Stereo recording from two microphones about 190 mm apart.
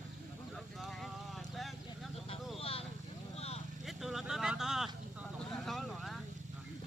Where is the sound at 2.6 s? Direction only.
30° left (ahead or behind).